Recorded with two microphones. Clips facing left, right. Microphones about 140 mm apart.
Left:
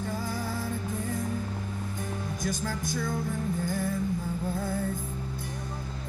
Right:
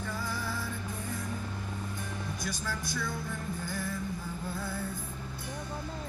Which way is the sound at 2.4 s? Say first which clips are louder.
Left 7 dB; 45° left (ahead or behind).